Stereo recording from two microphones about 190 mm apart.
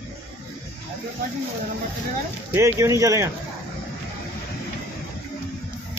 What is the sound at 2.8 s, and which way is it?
Speech, 15° right (ahead or behind).